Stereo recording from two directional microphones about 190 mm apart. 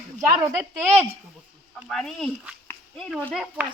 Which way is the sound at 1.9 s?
Centre (ahead or behind).